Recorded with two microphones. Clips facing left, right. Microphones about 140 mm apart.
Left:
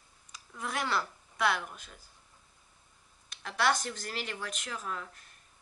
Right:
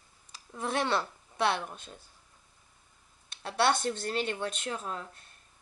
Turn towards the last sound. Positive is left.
turn(degrees=-30)  # may be behind; listen again after turning